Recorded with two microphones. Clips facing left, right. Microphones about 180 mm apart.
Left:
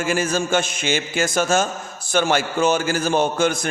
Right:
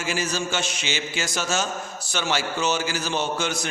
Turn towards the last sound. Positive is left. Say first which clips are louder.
# left 7 dB
turn(degrees=50)  # may be behind; listen again after turning